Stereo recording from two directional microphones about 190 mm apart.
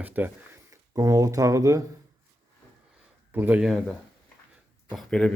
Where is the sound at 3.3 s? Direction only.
10° right (ahead or behind).